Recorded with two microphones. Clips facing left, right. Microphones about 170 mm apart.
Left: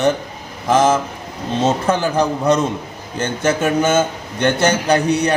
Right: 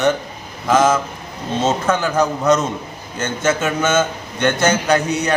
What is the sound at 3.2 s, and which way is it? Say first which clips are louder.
Speech: left 1 dB; 35° left (ahead or behind).